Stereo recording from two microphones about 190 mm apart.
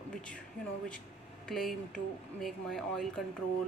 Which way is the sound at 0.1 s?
5° left (ahead or behind).